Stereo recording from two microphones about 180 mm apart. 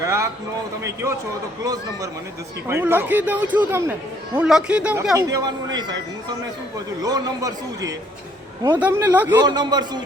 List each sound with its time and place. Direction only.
0.0 s speech: 15° right (ahead or behind)
1.6 s a man's voice: 20° right (ahead or behind)
7.0 s a man's voice: 20° right (ahead or behind)
9.4 s a man's voice: 25° right (ahead or behind)